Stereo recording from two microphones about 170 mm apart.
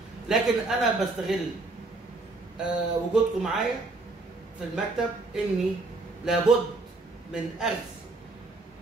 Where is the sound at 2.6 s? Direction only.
5° right (ahead or behind).